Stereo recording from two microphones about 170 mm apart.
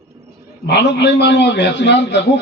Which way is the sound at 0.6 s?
85° left.